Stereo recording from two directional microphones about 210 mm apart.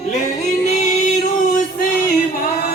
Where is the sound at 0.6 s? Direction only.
35° left (ahead or behind).